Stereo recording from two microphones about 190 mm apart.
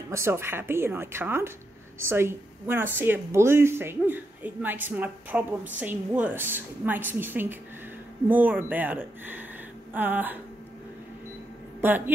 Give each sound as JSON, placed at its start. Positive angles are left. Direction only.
{"t": 0.1, "sound": "speech", "side_deg": -15}
{"t": 11.8, "sound": "speech", "side_deg": -10}